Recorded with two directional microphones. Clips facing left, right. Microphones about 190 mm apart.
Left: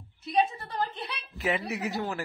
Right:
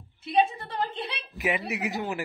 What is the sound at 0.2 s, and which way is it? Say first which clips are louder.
A woman's voice: right 2 dB; 25° right (ahead or behind).